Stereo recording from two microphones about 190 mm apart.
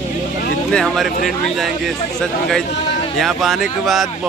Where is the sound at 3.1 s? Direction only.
Centre (ahead or behind).